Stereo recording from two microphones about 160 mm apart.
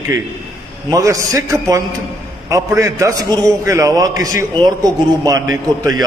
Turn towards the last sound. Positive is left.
turn(degrees=-20)  # may be behind; listen again after turning